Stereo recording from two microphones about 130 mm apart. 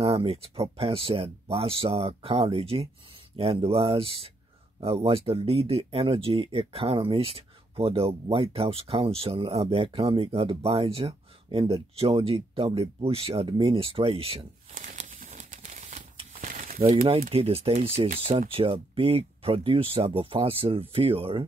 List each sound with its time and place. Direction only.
0.0 s speech: 45° right (ahead or behind)
14.7 s crumpling: 75° right (ahead or behind)
16.3 s a sound: 90° right
16.9 s speech: 45° right (ahead or behind)